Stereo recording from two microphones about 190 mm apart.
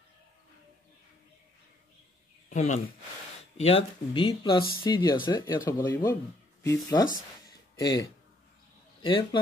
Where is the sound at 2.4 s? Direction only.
40° left (ahead or behind); by 6.2 s 15° left (ahead or behind).